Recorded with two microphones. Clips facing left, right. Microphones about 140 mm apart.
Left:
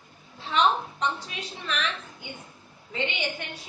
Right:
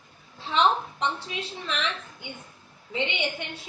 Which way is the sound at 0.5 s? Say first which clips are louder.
Right 1 dB; 25° right (ahead or behind).